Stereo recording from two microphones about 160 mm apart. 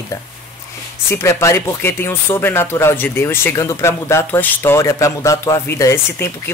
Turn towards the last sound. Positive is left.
turn(degrees=15)  # may be behind; listen again after turning